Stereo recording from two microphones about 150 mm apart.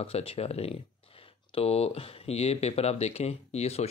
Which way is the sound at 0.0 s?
40° left (ahead or behind).